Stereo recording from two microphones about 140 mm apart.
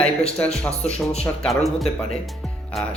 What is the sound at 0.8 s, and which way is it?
Speech, 50° left (ahead or behind).